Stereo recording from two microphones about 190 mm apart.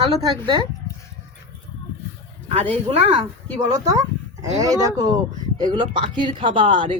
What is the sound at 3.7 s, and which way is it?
Speech, 20° right (ahead or behind).